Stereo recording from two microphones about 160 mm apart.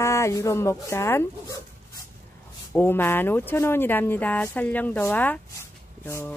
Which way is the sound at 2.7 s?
10° left (ahead or behind).